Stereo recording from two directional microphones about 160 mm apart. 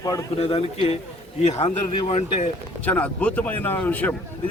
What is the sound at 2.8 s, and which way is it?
Speech, 10° left (ahead or behind).